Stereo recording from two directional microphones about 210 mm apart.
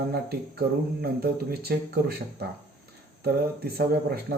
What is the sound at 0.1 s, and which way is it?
Speech, 50° right (ahead or behind).